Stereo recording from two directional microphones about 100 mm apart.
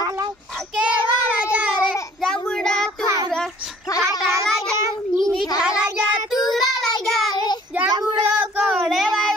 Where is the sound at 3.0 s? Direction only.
35° right (ahead or behind).